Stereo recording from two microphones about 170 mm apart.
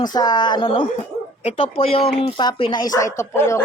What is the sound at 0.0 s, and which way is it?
Speech, 25° left (ahead or behind).